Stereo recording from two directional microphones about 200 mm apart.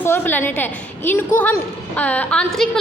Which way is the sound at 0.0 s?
10° left (ahead or behind).